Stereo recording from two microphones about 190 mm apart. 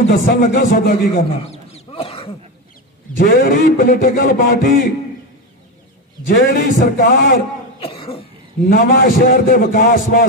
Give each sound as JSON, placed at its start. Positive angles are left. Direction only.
{"t": 0.1, "sound": "a man's voice", "side_deg": 40}
{"t": 3.2, "sound": "a man's voice", "side_deg": 45}
{"t": 6.5, "sound": "a man's voice", "side_deg": 45}
{"t": 7.8, "sound": "cough", "side_deg": 30}
{"t": 8.6, "sound": "a man's voice", "side_deg": 45}